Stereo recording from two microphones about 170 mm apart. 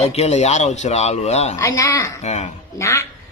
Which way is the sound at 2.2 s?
40° left (ahead or behind).